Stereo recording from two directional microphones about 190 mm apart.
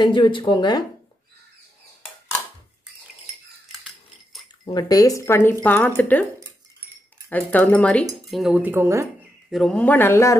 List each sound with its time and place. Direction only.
0.0 s speech: 25° left (ahead or behind)
3.8 s a sound: centre (ahead or behind)
4.6 s speech: 20° left (ahead or behind)
7.2 s speech: 10° left (ahead or behind); by 9.1 s 15° right (ahead or behind)
9.5 s speech: 5° left (ahead or behind)